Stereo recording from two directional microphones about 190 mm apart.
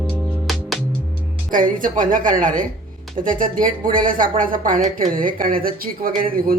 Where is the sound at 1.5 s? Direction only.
45° right (ahead or behind).